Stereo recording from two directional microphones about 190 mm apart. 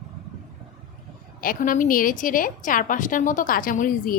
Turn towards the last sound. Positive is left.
turn(degrees=45)  # may be behind; listen again after turning